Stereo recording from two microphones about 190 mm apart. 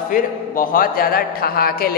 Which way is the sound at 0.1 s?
45° left (ahead or behind).